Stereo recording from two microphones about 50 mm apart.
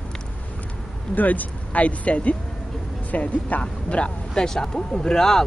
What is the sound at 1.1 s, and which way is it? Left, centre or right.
Speech, left.